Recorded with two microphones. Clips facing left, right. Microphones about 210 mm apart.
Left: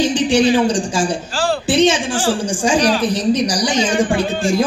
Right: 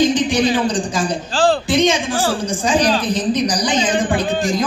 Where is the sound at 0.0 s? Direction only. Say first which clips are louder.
Left 1 dB; 30° left (ahead or behind).